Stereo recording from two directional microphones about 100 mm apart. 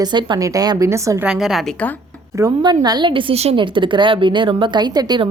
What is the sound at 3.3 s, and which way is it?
Speech, 90° right.